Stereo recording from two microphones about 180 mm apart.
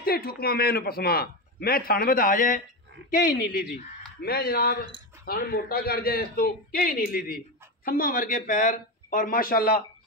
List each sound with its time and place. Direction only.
0.0 s a man's voice: 55° left (ahead or behind)